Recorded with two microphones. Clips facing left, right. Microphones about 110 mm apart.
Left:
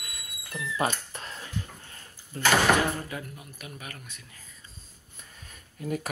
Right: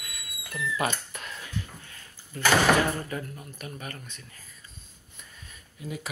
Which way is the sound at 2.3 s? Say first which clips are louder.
Even; 35° left (ahead or behind).